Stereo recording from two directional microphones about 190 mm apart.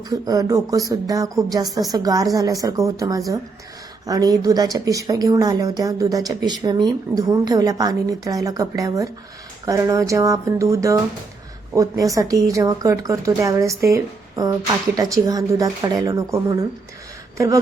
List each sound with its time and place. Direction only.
0.1 s speech: 20° right (ahead or behind)